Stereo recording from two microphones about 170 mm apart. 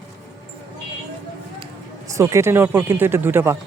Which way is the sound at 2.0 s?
20° right (ahead or behind).